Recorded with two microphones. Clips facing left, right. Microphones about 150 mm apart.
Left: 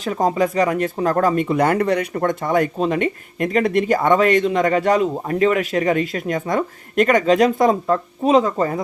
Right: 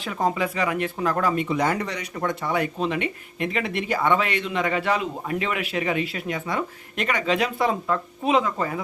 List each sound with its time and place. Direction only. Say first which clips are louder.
0.0 s speech: left 6 dB; 40° left (ahead or behind)